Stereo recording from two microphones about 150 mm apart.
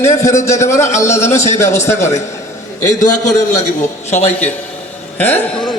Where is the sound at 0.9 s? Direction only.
50° left (ahead or behind).